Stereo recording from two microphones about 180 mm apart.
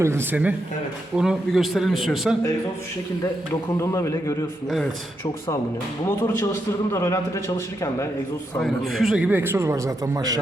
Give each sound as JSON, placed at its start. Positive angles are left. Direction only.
{"t": 0.0, "sound": "a man's voice", "side_deg": -15}
{"t": 3.5, "sound": "a man's voice", "side_deg": 15}
{"t": 6.1, "sound": "a man's voice", "side_deg": 15}
{"t": 8.5, "sound": "speech", "side_deg": 0}